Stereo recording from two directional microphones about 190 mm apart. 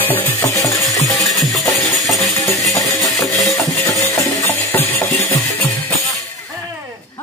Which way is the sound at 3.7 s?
15° left (ahead or behind).